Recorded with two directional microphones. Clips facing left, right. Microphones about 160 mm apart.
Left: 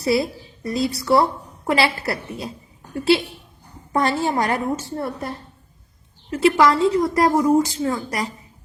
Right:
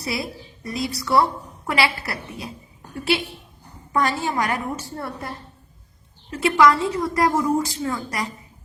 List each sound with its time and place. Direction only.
0.0 s a woman's voice: 30° left (ahead or behind)
3.9 s a woman's voice: 35° left (ahead or behind)
6.3 s a woman's voice: 30° left (ahead or behind)